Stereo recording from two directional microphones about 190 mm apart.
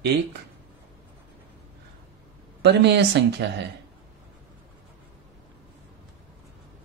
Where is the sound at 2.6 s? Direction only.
65° right (ahead or behind).